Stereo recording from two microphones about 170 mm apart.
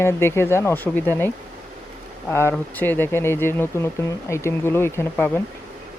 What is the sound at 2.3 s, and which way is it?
Speech, 15° left (ahead or behind).